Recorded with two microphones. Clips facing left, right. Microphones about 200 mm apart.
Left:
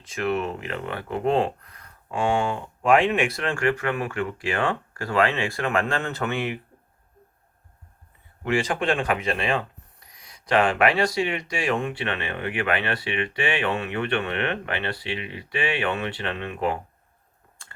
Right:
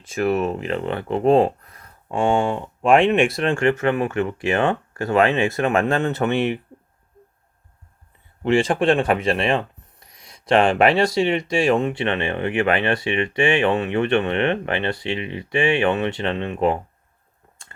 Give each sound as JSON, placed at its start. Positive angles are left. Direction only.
{"t": 0.0, "sound": "speech", "side_deg": -25}
{"t": 8.4, "sound": "speech", "side_deg": -25}